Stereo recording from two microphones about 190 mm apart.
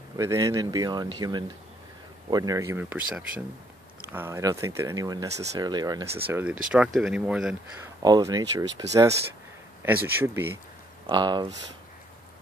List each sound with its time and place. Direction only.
0.2 s speech: 15° right (ahead or behind)
6.7 s speech: 5° right (ahead or behind)
8.0 s speech: 20° right (ahead or behind)
11.1 s speech: 25° right (ahead or behind)